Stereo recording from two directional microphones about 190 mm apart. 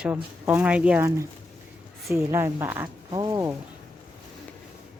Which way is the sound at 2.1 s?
15° right (ahead or behind).